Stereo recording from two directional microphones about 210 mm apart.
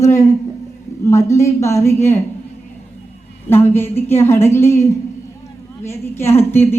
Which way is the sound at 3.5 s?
10° left (ahead or behind).